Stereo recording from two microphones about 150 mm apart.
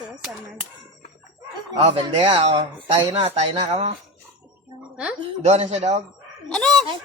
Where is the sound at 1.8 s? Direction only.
40° right (ahead or behind).